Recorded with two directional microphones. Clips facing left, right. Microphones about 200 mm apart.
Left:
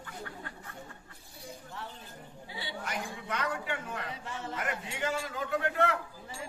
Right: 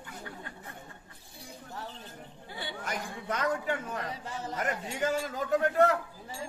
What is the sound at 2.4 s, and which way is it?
A man's voice, 50° right (ahead or behind).